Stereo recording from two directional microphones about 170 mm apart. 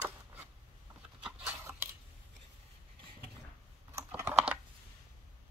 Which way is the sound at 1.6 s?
15° right (ahead or behind).